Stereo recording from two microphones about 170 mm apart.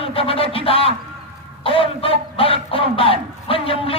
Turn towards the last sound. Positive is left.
turn(degrees=35)  # may be behind; listen again after turning